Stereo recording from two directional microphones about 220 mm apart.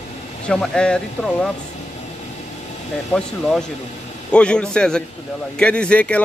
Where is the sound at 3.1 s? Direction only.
Centre (ahead or behind).